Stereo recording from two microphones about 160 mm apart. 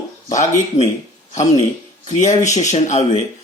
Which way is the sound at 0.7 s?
20° left (ahead or behind).